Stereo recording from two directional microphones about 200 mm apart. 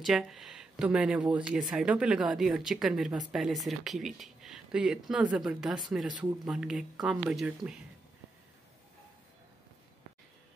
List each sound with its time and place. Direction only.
0.0 s speech: centre (ahead or behind)